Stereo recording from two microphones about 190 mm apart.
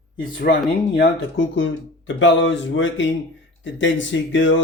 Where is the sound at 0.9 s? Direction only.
70° left (ahead or behind).